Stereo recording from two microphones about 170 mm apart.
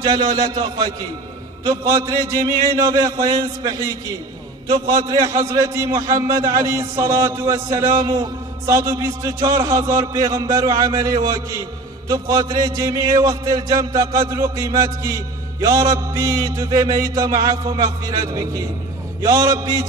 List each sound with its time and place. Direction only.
0.0 s a man's voice: 25° right (ahead or behind)